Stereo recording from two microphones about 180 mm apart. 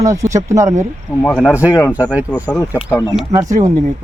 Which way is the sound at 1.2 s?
10° left (ahead or behind).